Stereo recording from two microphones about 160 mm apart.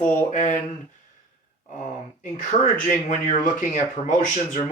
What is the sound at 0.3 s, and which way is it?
Speech, 50° left (ahead or behind).